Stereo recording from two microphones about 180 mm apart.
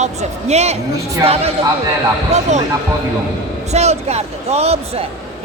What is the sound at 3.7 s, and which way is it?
Speech, 35° right (ahead or behind).